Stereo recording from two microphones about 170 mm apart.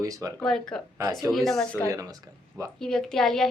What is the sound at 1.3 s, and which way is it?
Speech, centre (ahead or behind).